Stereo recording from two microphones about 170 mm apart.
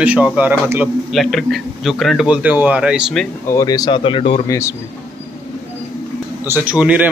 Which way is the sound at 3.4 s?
20° left (ahead or behind).